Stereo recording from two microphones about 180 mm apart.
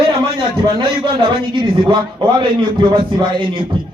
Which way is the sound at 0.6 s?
25° right (ahead or behind).